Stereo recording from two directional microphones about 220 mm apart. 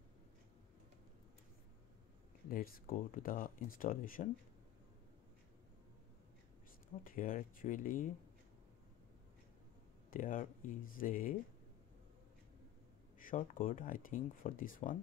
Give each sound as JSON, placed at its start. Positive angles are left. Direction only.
{"t": 2.5, "sound": "speech", "side_deg": 40}
{"t": 7.1, "sound": "speech", "side_deg": 40}
{"t": 10.1, "sound": "speech", "side_deg": 40}
{"t": 13.2, "sound": "speech", "side_deg": 40}